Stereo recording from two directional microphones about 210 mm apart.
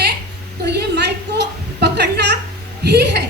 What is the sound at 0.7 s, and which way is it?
A woman's voice, 50° right (ahead or behind).